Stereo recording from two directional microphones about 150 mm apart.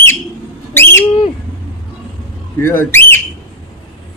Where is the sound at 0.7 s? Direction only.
15° left (ahead or behind).